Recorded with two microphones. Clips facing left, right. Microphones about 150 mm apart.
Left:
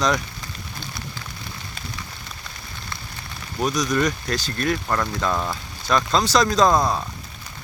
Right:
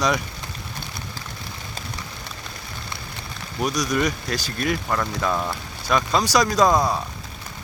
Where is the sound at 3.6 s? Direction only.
10° right (ahead or behind).